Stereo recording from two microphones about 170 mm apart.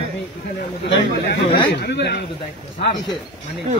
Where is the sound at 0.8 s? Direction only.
85° left.